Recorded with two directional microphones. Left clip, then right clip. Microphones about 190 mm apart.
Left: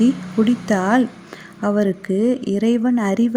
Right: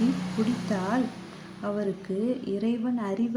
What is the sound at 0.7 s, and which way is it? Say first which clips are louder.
Speech: left 11 dB; 45° left (ahead or behind).